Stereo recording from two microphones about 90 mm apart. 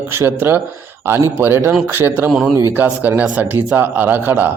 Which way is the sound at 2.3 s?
5° right (ahead or behind).